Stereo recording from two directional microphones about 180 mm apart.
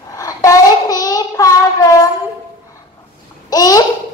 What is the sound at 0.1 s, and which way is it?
Child singing, 20° left (ahead or behind).